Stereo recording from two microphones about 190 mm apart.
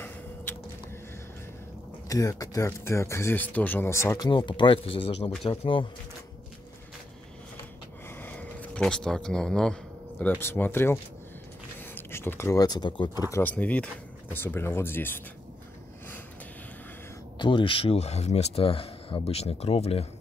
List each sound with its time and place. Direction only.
2.0 s speech: 20° left (ahead or behind)
8.2 s speech: 10° left (ahead or behind); by 13.2 s 25° left (ahead or behind)
13.3 s speech: 10° left (ahead or behind)
17.4 s speech: 25° left (ahead or behind)